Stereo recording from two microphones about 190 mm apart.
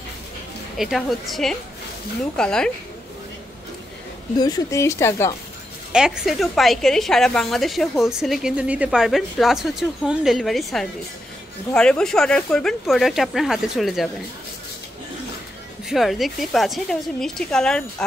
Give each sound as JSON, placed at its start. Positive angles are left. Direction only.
{"t": 0.7, "sound": "a woman's voice", "side_deg": 0}
{"t": 4.4, "sound": "speech", "side_deg": 20}
{"t": 5.9, "sound": "a woman's voice", "side_deg": -5}
{"t": 15.9, "sound": "a woman's voice", "side_deg": 0}